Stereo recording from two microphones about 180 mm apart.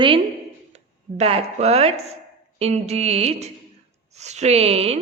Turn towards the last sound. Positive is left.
turn(degrees=-35)  # may be behind; listen again after turning